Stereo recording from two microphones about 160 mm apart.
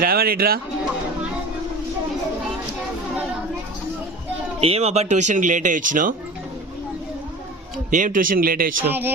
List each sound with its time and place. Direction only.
0.0 s speech: 70° right (ahead or behind)
4.6 s speech: 40° right (ahead or behind); by 6.1 s 55° right (ahead or behind)
7.9 s a man's voice: 55° right (ahead or behind)
8.9 s speech: 10° right (ahead or behind)